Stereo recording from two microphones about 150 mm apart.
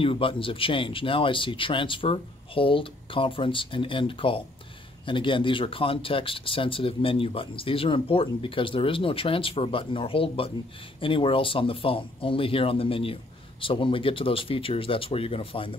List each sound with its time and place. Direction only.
0.0 s speech: 35° left (ahead or behind)